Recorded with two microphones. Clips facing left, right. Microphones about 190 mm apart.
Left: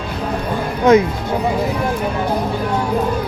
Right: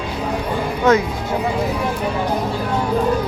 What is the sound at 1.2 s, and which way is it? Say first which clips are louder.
Speech: left 2 dB; centre (ahead or behind).